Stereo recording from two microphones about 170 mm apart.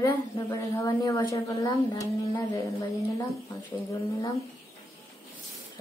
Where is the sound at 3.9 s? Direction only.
20° left (ahead or behind).